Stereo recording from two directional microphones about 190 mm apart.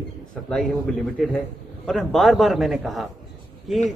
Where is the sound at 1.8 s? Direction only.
Centre (ahead or behind).